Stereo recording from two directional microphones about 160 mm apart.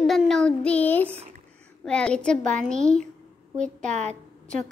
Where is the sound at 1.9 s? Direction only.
5° left (ahead or behind).